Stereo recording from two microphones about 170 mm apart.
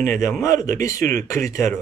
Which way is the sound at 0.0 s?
15° left (ahead or behind).